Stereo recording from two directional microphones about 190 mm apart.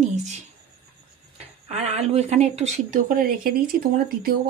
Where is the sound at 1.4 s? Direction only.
35° right (ahead or behind).